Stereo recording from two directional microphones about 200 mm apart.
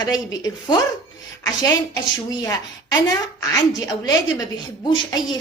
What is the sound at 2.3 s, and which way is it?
A woman's voice, 20° left (ahead or behind).